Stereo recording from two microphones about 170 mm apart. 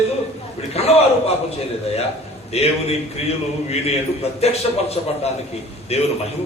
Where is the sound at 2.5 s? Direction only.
35° left (ahead or behind).